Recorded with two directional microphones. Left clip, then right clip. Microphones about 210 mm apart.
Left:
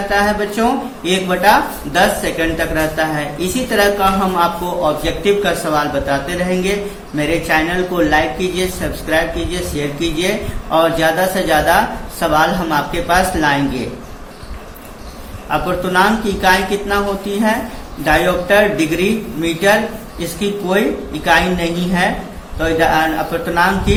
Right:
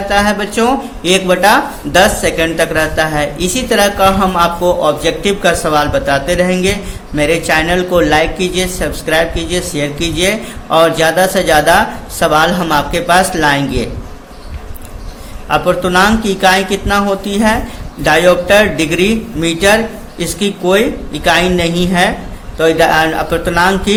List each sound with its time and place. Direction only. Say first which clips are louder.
0.1 s speech: right 3 dB; 55° right (ahead or behind)
15.4 s speech: right 5 dB; 55° right (ahead or behind)